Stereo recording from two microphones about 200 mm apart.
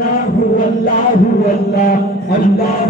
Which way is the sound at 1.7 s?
50° left (ahead or behind).